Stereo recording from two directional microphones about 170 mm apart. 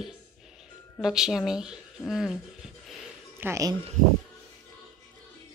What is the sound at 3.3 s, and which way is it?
Speech, 15° right (ahead or behind).